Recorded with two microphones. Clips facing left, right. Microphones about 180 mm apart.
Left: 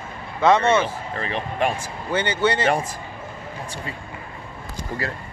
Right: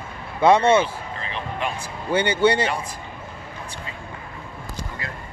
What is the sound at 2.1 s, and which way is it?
Speech, 10° right (ahead or behind).